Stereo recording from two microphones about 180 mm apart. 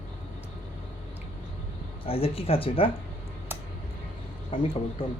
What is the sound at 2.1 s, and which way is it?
Speech, 30° left (ahead or behind).